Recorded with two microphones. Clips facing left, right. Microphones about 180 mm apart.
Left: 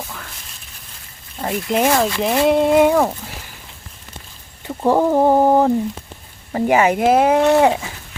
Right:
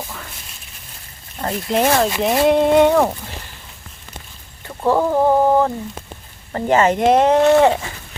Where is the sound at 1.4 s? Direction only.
5° left (ahead or behind).